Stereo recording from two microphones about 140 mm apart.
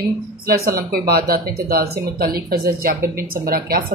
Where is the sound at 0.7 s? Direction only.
90° right.